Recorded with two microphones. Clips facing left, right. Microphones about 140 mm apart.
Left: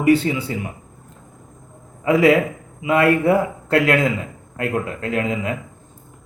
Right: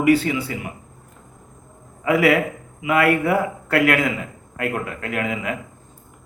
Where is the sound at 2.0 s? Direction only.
25° left (ahead or behind).